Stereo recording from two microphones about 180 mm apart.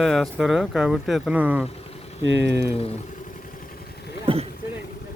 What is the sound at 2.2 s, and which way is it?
Speech, 90° right.